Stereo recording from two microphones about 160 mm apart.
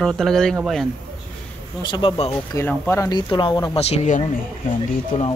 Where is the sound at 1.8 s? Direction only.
30° left (ahead or behind).